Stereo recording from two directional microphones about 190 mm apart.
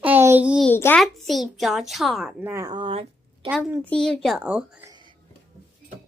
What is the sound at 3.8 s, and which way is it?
Speech, 5° left (ahead or behind).